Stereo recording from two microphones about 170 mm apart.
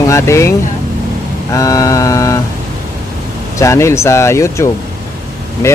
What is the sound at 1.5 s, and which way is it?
Mantra, 20° left (ahead or behind).